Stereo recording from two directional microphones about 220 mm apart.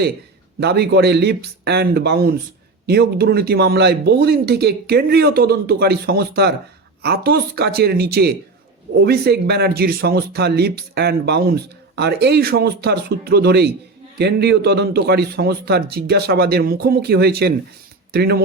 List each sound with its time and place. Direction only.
0.6 s speech: 50° right (ahead or behind)